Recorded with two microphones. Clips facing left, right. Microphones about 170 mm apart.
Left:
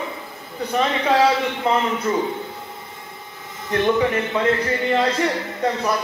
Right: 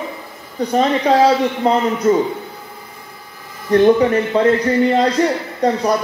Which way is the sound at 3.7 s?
35° right (ahead or behind).